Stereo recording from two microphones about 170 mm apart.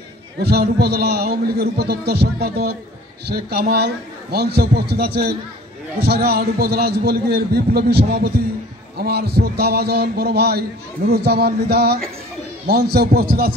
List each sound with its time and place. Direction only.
0.4 s a man's voice: 70° right (ahead or behind)